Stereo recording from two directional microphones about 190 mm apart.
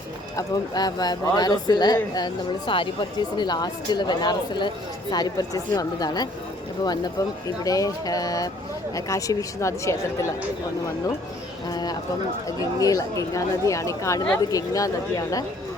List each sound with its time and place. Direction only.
0.3 s speech: 20° left (ahead or behind)
11.7 s speech: 20° left (ahead or behind)